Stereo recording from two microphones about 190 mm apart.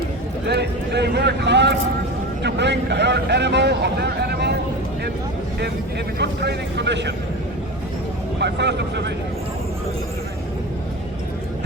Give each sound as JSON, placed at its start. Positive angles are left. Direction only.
{"t": 0.4, "sound": "a man's voice", "side_deg": -60}
{"t": 6.1, "sound": "a man's voice", "side_deg": -60}
{"t": 8.4, "sound": "a man's voice", "side_deg": -65}